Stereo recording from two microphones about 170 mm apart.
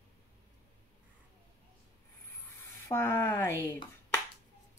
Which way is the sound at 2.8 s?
15° left (ahead or behind).